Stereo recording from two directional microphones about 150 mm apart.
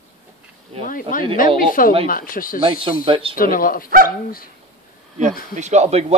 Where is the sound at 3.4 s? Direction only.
70° left (ahead or behind).